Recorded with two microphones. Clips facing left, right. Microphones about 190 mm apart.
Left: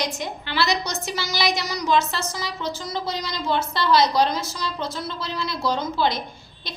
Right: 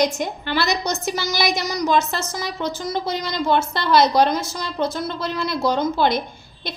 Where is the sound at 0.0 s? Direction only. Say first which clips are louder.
Right 7 dB; 50° right (ahead or behind).